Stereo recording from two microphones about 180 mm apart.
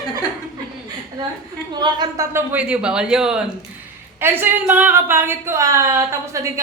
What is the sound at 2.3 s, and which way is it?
A man's voice, 10° right (ahead or behind).